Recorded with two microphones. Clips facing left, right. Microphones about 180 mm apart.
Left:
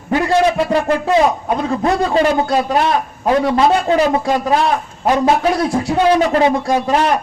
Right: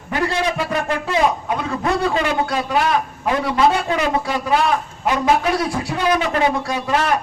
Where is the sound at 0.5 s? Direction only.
30° left (ahead or behind).